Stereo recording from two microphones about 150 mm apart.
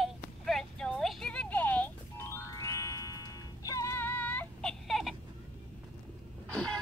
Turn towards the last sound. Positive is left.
turn(degrees=5)  # may be behind; listen again after turning